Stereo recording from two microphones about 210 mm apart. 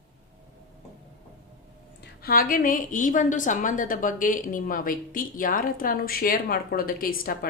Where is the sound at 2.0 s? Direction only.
45° left (ahead or behind).